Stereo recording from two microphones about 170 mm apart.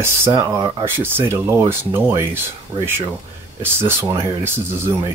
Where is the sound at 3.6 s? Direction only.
15° right (ahead or behind).